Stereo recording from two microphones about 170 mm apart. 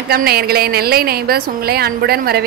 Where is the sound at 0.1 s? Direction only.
65° right (ahead or behind).